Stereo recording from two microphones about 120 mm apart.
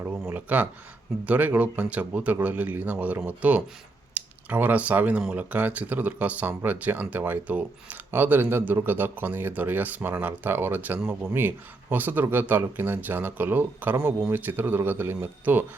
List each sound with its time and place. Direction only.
0.3 s speech: 15° right (ahead or behind)